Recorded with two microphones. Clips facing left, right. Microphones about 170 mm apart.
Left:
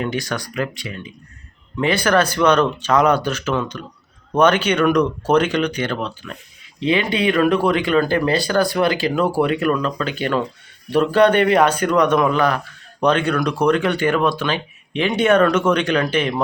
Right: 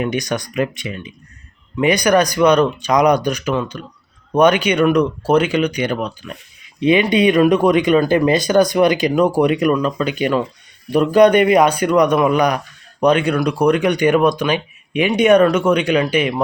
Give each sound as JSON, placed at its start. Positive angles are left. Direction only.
{"t": 0.0, "sound": "a man's voice", "side_deg": -20}